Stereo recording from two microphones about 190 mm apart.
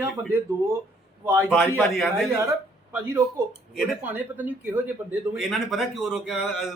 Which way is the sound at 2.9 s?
15° right (ahead or behind).